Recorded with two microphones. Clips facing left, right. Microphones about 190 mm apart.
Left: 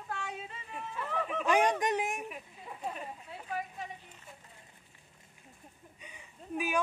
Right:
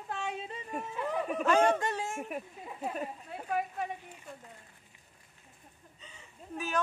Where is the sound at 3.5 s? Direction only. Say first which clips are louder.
Right 6 dB; 55° right (ahead or behind).